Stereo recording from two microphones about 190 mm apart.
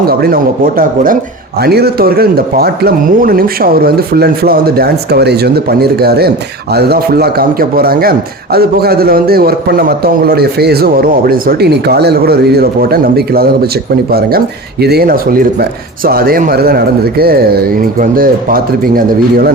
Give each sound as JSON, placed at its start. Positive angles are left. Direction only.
{"t": 0.0, "sound": "a man's voice", "side_deg": -55}